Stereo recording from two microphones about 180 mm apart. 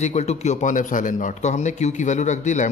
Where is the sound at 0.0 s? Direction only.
40° left (ahead or behind).